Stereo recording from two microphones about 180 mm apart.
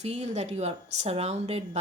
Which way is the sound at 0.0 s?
40° right (ahead or behind).